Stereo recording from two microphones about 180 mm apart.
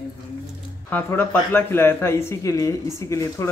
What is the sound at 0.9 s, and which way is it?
Speech, 10° left (ahead or behind).